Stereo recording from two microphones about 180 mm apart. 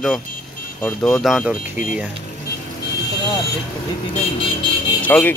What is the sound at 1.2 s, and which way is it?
Speech, centre (ahead or behind).